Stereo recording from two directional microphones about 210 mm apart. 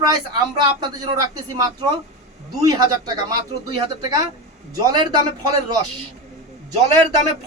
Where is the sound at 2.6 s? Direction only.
15° right (ahead or behind).